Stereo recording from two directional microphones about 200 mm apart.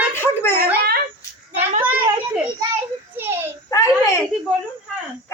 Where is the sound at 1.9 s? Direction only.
10° right (ahead or behind).